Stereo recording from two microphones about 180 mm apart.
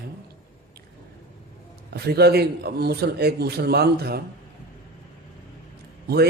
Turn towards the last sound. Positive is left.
turn(degrees=-60)  # may be behind; listen again after turning